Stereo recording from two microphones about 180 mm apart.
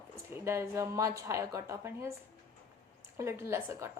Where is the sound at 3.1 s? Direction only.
15° right (ahead or behind).